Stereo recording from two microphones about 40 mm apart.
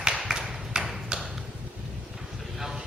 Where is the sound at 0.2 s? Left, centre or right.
Centre.